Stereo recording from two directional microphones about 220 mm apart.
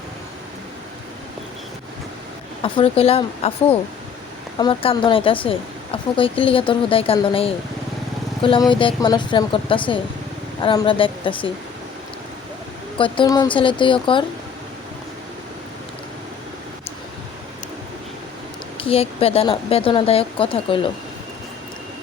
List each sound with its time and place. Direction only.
2.6 s a woman's voice: 25° left (ahead or behind)
13.0 s a woman's voice: 20° left (ahead or behind)
18.8 s a woman's voice: 25° left (ahead or behind)